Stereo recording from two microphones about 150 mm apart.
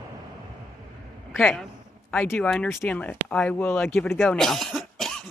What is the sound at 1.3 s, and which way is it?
Speech, centre (ahead or behind).